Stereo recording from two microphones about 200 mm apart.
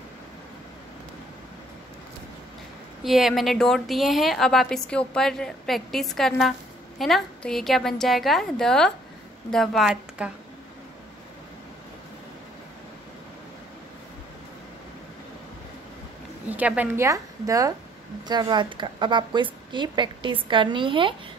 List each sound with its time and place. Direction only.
3.0 s a woman's voice: centre (ahead or behind)
16.4 s a woman's voice: 5° right (ahead or behind); by 21.1 s 25° right (ahead or behind)